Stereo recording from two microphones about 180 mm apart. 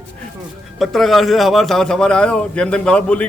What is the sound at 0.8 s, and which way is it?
A man's voice, centre (ahead or behind).